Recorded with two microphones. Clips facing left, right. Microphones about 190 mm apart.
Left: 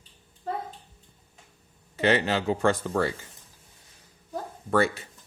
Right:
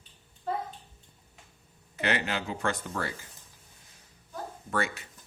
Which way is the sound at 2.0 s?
30° left (ahead or behind).